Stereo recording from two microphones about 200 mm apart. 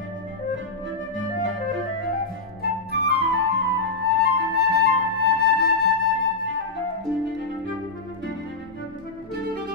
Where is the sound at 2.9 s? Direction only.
55° left (ahead or behind).